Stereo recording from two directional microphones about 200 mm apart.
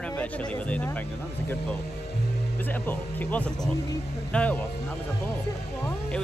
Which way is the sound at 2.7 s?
10° left (ahead or behind).